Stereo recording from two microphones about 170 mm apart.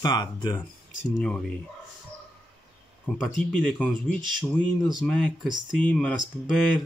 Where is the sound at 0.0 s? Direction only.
25° left (ahead or behind).